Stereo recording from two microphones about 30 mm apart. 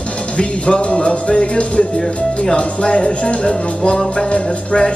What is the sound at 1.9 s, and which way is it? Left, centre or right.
Speech, centre.